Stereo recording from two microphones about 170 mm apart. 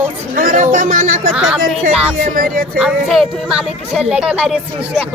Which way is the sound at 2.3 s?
55° right (ahead or behind).